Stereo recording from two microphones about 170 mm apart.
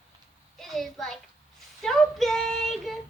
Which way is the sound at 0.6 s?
Centre (ahead or behind).